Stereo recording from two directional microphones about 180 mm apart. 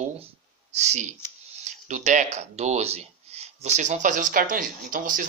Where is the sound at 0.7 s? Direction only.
40° right (ahead or behind).